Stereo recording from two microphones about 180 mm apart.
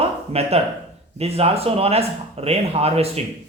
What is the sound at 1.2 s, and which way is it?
A man's voice, 35° right (ahead or behind).